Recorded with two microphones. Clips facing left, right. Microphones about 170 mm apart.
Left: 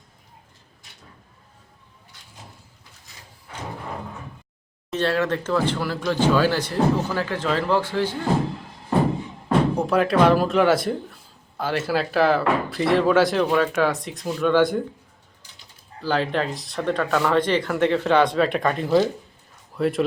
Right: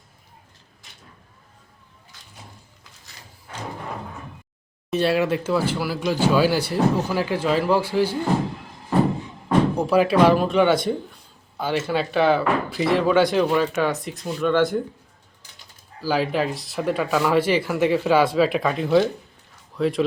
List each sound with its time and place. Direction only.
3.1 s drawer open or close: 80° right
4.9 s speech: 10° right (ahead or behind)
9.7 s speech: centre (ahead or behind)
16.0 s speech: 5° right (ahead or behind)